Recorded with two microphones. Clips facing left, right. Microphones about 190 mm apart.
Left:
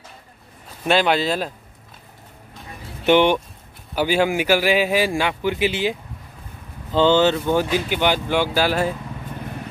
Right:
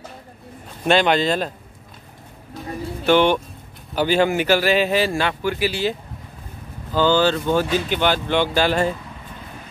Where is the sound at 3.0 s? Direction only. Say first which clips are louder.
Left 1 dB; 15° left (ahead or behind).